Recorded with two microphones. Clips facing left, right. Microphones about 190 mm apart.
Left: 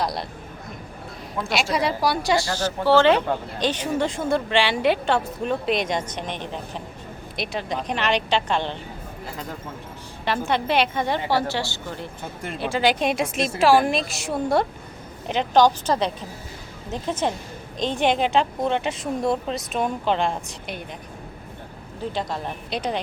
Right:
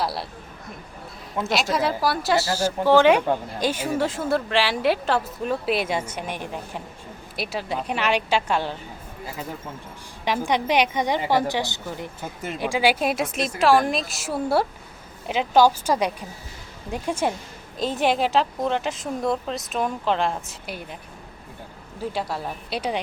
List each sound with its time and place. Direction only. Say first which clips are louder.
0.0 s a woman's voice: left 1 dB; 5° right (ahead or behind)
1.4 s a woman's voice: right 2 dB; 20° right (ahead or behind)
1.7 s a woman's voice: left 2 dB; centre (ahead or behind)
10.2 s a woman's voice: even; 15° right (ahead or behind)
22.1 s a woman's voice: left 1 dB; 10° right (ahead or behind)